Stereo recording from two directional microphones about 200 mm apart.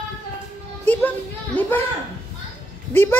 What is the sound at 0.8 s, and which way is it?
Speech, 10° left (ahead or behind).